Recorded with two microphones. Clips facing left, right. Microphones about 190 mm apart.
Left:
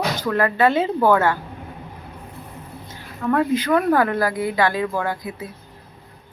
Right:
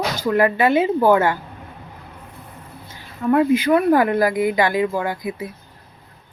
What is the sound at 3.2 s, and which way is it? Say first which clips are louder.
Speech: right 3 dB; 15° right (ahead or behind).